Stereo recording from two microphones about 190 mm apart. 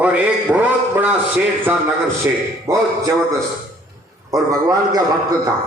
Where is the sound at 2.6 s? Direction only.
15° right (ahead or behind).